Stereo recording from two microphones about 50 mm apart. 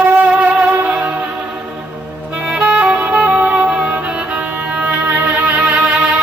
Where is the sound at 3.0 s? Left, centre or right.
Right.